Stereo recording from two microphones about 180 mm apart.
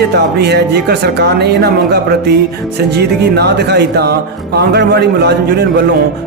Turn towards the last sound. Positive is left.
turn(degrees=-65)  # may be behind; listen again after turning